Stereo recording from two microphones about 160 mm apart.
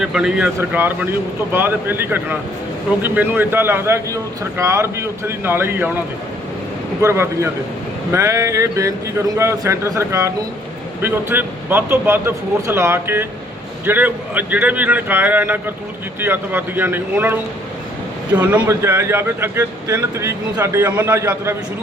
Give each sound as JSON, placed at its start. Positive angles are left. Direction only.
{"t": 0.0, "sound": "speech", "side_deg": -5}
{"t": 7.0, "sound": "a man's voice", "side_deg": -15}